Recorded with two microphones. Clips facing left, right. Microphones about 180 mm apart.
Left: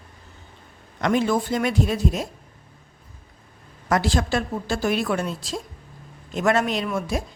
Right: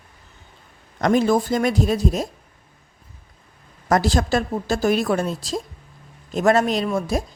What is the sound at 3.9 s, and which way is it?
A woman's voice, 40° right (ahead or behind).